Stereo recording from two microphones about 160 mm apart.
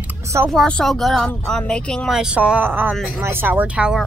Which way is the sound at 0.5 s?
5° left (ahead or behind).